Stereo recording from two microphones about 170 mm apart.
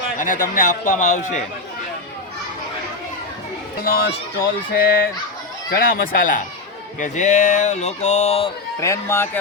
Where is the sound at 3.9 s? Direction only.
65° left (ahead or behind).